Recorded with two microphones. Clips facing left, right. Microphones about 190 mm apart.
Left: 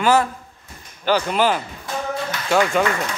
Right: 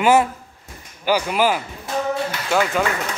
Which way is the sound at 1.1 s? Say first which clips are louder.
Even; 10° right (ahead or behind).